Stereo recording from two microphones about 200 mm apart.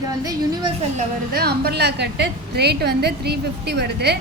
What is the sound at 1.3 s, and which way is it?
A woman's voice, 50° right (ahead or behind).